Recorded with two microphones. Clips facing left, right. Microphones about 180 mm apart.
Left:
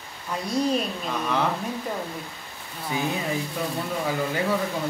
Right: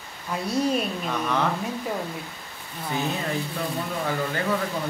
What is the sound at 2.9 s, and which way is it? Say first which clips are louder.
Speech: left 1 dB; 10° left (ahead or behind).